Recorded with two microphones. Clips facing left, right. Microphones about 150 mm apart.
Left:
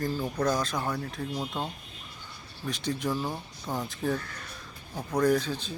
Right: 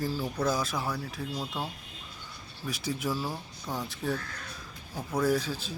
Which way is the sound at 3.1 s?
20° left (ahead or behind).